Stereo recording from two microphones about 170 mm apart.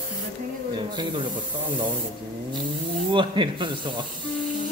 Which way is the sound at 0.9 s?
25° right (ahead or behind).